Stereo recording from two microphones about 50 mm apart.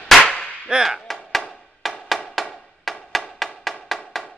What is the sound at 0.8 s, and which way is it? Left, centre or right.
Music, centre.